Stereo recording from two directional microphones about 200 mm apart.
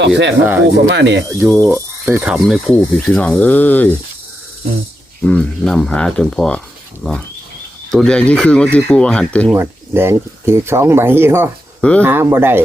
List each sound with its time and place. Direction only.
0.6 s speech: 60° right (ahead or behind)
1.3 s speech: 15° right (ahead or behind); by 3.9 s 10° left (ahead or behind)
5.2 s speech: 5° left (ahead or behind)
9.5 s speech: 10° right (ahead or behind)
11.8 s speech: 5° left (ahead or behind)
12.0 s speech: 10° right (ahead or behind)